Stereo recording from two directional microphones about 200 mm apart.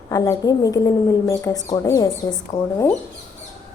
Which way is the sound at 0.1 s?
15° left (ahead or behind).